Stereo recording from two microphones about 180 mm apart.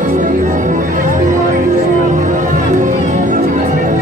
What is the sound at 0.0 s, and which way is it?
Music, 45° right (ahead or behind).